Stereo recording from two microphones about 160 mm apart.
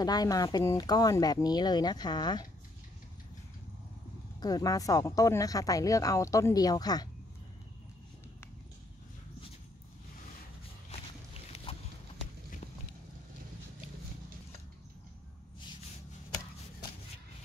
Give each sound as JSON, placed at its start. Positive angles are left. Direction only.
{"t": 0.0, "sound": "speech", "side_deg": 25}
{"t": 4.4, "sound": "speech", "side_deg": 25}
{"t": 11.5, "sound": "a sound", "side_deg": 40}